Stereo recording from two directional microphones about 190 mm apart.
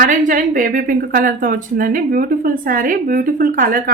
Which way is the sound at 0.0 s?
45° right (ahead or behind).